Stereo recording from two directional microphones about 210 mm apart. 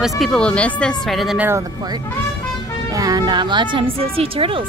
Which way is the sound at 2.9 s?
20° right (ahead or behind).